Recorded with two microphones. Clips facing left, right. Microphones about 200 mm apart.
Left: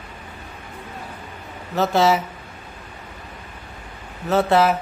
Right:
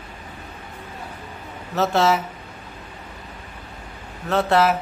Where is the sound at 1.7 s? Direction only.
Centre (ahead or behind).